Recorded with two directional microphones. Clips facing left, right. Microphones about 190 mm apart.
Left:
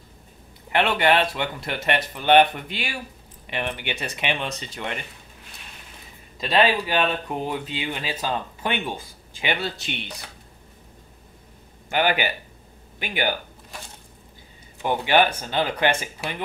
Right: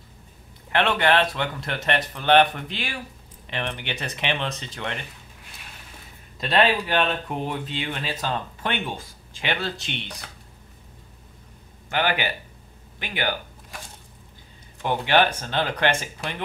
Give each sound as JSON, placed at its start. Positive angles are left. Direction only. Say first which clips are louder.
{"t": 0.7, "sound": "speech", "louder": "left 1 dB", "side_deg": 10}
{"t": 6.4, "sound": "speech", "louder": "left 1 dB", "side_deg": 5}
{"t": 11.9, "sound": "speech", "louder": "left 2 dB", "side_deg": 10}
{"t": 14.8, "sound": "speech", "louder": "left 1 dB", "side_deg": 10}